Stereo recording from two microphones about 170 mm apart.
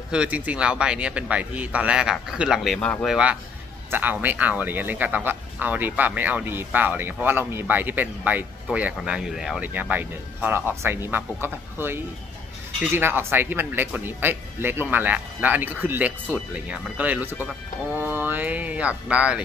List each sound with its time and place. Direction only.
0.1 s a man's voice: 5° right (ahead or behind)
3.9 s speech: 10° right (ahead or behind)